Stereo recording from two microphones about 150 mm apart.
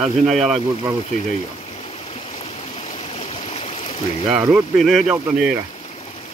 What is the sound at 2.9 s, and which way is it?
Stream, 40° left (ahead or behind).